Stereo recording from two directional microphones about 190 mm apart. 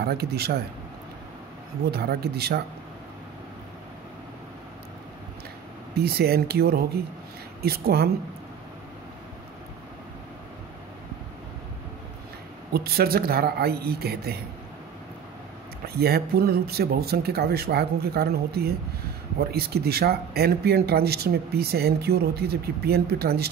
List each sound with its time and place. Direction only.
0.0 s speech: 55° right (ahead or behind)
1.9 s speech: 55° right (ahead or behind)
5.9 s speech: 55° right (ahead or behind)
12.7 s speech: 55° right (ahead or behind)
16.0 s speech: 55° right (ahead or behind)